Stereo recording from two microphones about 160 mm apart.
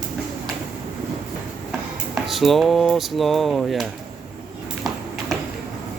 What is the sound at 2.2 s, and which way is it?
Speech, centre (ahead or behind).